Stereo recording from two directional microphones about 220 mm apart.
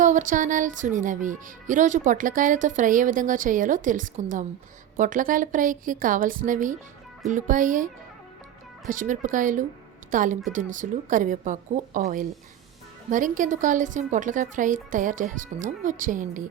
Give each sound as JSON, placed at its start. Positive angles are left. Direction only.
{"t": 0.0, "sound": "speech", "side_deg": -35}
{"t": 8.9, "sound": "a woman's voice", "side_deg": -35}